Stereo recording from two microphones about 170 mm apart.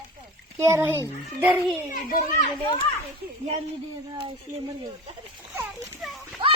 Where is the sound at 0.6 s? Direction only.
15° right (ahead or behind).